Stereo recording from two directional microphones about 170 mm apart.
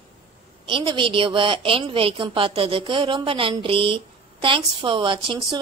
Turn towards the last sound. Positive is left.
turn(degrees=-30)  # may be behind; listen again after turning